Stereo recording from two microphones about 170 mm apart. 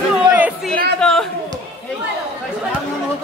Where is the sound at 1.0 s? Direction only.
5° left (ahead or behind).